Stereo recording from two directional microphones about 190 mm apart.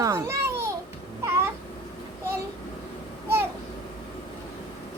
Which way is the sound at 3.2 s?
10° right (ahead or behind).